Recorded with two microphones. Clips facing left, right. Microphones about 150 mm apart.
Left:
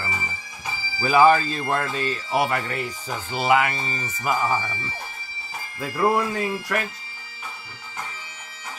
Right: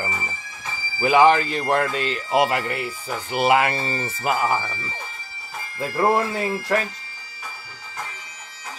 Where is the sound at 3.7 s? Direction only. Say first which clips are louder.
Right 4 dB; 15° left (ahead or behind).